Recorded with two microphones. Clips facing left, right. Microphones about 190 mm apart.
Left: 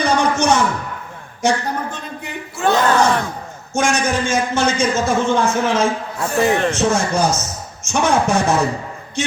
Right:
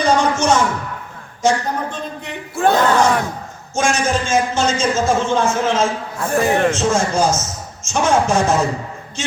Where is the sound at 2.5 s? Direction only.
50° right (ahead or behind).